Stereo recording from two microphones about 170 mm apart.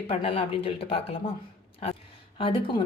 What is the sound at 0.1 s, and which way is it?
Speech, 35° left (ahead or behind).